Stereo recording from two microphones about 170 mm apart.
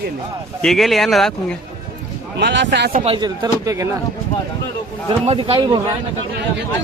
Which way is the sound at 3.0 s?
35° right (ahead or behind).